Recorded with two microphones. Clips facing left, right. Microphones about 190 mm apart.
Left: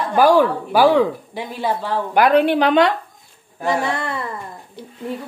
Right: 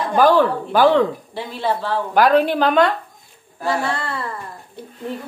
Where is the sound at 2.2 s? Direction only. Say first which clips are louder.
Left 1 dB; 60° left (ahead or behind).